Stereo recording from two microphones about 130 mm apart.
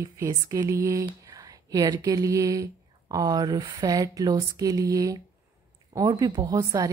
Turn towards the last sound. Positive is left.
turn(degrees=-25)  # may be behind; listen again after turning